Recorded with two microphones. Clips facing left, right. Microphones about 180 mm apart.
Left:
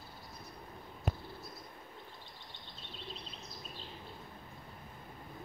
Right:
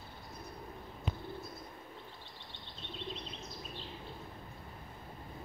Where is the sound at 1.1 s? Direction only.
45° left (ahead or behind).